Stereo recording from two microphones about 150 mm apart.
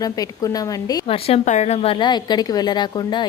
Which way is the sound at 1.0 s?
40° left (ahead or behind).